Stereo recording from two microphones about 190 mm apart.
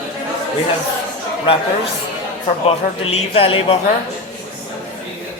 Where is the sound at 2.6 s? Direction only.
35° left (ahead or behind).